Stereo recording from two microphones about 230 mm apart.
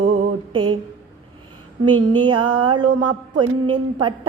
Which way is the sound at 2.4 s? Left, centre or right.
Right.